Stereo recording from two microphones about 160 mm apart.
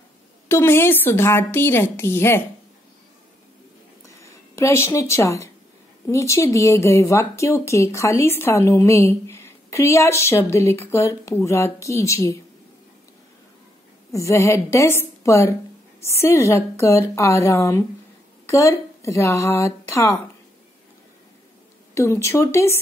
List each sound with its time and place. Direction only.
0.5 s a woman's voice: 15° left (ahead or behind)
4.2 s a woman's voice: 20° left (ahead or behind)
14.1 s a woman's voice: 20° left (ahead or behind)
21.9 s a woman's voice: 20° left (ahead or behind)